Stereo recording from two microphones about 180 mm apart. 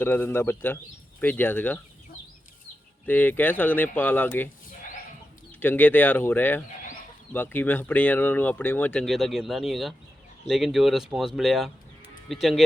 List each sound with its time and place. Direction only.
0.0 s speech: 10° left (ahead or behind)
3.1 s speech: 10° left (ahead or behind)
5.5 s speech: 10° left (ahead or behind)